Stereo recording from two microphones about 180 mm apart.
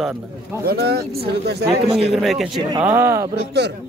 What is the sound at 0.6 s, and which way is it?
Speech, 60° right (ahead or behind).